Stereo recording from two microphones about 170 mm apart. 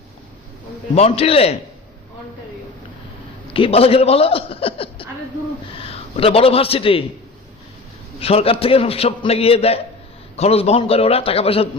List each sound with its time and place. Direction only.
0.9 s a man's voice: 35° left (ahead or behind)
3.5 s a man's voice: 35° left (ahead or behind)
8.2 s a man's voice: 35° left (ahead or behind)